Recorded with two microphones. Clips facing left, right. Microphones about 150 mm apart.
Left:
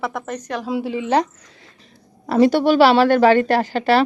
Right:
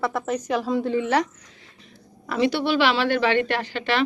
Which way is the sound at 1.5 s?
40° left (ahead or behind).